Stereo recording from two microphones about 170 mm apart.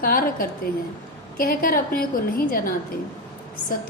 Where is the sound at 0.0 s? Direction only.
55° left (ahead or behind).